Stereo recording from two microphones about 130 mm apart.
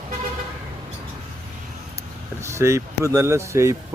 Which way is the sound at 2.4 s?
20° right (ahead or behind).